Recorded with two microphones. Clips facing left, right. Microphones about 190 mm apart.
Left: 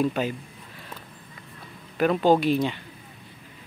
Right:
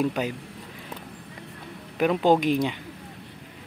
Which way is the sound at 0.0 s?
10° right (ahead or behind).